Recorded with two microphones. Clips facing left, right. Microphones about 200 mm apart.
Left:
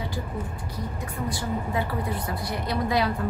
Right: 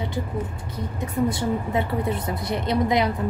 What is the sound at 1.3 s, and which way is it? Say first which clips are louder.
A woman's voice: right 4 dB; 25° right (ahead or behind).